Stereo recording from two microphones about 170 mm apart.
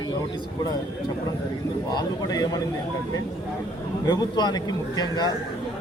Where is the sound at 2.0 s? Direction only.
25° left (ahead or behind).